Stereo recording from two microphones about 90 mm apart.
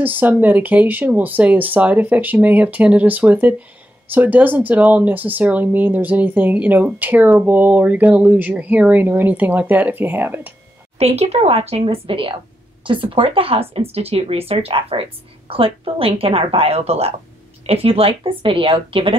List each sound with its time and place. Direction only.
0.0 s speech: 20° right (ahead or behind)
11.4 s a woman's voice: 90° right
12.8 s speech: 70° right (ahead or behind)